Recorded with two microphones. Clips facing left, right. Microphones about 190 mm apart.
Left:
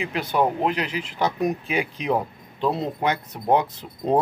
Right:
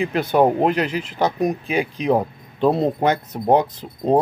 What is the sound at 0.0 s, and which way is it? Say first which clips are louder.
Speech: right 6 dB; 50° right (ahead or behind).